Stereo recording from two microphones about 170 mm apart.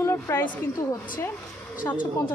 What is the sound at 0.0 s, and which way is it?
Speech, 15° left (ahead or behind).